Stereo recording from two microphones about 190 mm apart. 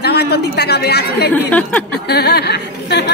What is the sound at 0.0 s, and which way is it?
A woman's voice, 60° left (ahead or behind).